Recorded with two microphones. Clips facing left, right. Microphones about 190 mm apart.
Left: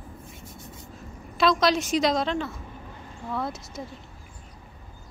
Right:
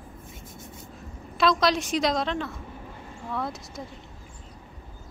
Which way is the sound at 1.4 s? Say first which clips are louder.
Left 1 dB; centre (ahead or behind).